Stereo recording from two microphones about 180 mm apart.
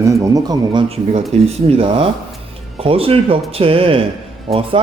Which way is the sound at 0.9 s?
35° right (ahead or behind).